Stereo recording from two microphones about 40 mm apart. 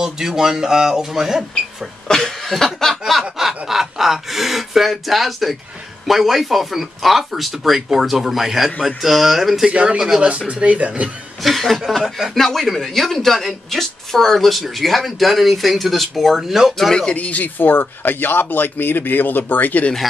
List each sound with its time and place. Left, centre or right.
0.0 s speech: centre
2.0 s chuckle: centre
2.6 s snicker: centre
3.3 s speech: centre
10.5 s speech: right
11.4 s speech: centre
16.9 s speech: left
17.2 s speech: left
17.6 s speech: left